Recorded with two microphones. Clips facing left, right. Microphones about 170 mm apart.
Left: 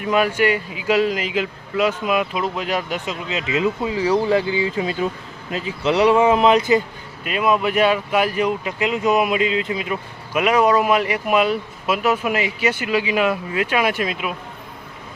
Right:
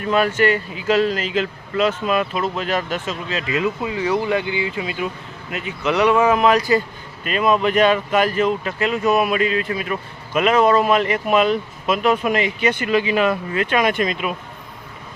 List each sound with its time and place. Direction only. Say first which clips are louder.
0.0 s speech: right 1 dB; 10° left (ahead or behind)
3.9 s speech: left 3 dB; 35° left (ahead or behind)
7.3 s speech: right 1 dB; 5° left (ahead or behind)